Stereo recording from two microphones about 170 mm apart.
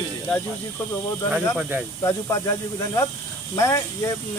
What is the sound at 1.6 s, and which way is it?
Speech, 5° right (ahead or behind).